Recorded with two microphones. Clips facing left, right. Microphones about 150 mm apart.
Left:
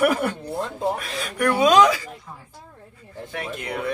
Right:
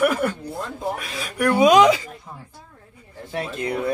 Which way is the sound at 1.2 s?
5° right (ahead or behind).